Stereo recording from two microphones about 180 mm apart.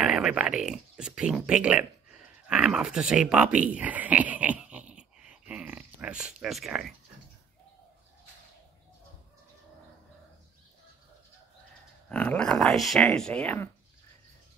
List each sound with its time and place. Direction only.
0.0 s speech: 5° right (ahead or behind)
12.1 s speech: 5° left (ahead or behind)